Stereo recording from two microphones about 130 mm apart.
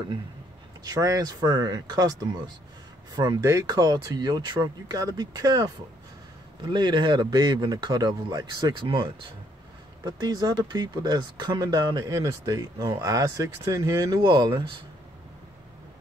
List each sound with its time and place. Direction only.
0.8 s speech: 30° right (ahead or behind)